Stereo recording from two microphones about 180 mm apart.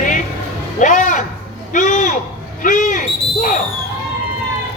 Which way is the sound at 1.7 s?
45° left (ahead or behind).